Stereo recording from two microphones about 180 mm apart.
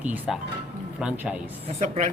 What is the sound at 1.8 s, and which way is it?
Speech, 40° right (ahead or behind).